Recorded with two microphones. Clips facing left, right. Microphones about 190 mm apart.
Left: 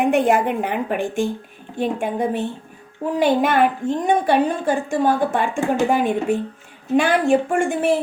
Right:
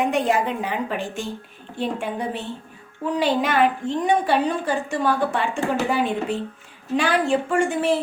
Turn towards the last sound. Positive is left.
turn(degrees=50)  # may be behind; listen again after turning